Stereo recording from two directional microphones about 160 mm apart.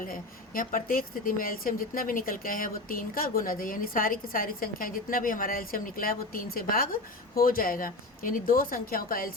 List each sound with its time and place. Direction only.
0.0 s speech: 60° left (ahead or behind)